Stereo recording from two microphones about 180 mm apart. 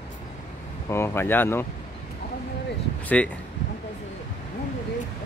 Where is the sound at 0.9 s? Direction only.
15° left (ahead or behind).